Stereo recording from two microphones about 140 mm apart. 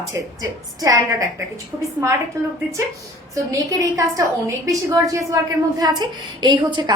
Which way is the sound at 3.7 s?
25° right (ahead or behind).